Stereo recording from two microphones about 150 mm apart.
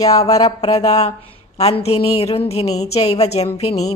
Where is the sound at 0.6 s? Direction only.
45° left (ahead or behind).